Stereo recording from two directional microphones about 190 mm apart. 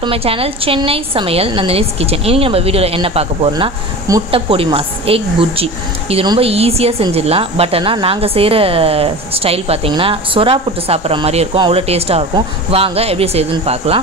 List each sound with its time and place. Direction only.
0.0 s a woman's voice: 30° right (ahead or behind)